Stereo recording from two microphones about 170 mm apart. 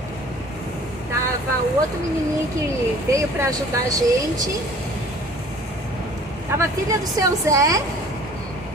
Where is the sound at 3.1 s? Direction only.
20° right (ahead or behind).